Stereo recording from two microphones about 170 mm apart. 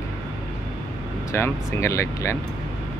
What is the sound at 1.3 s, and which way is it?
Speech, 15° left (ahead or behind).